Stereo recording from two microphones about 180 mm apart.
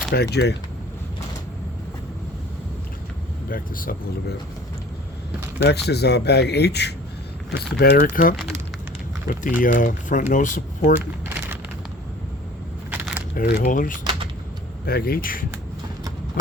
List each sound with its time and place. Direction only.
0.1 s speech: 65° left (ahead or behind)
3.5 s speech: 50° left (ahead or behind)
5.6 s speech: 65° left (ahead or behind); by 8.4 s 50° left (ahead or behind)
9.6 s speech: 45° left (ahead or behind)
12.9 s keys jangling: 10° right (ahead or behind)
13.3 s speech: 50° left (ahead or behind)
14.8 s speech: 60° left (ahead or behind)